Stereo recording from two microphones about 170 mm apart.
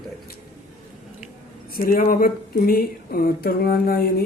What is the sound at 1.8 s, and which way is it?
Speech, 55° left (ahead or behind).